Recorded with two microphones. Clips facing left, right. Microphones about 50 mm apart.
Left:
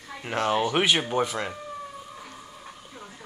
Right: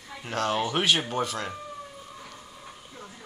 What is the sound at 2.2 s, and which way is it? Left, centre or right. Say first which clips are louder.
Music: left 2 dB; centre.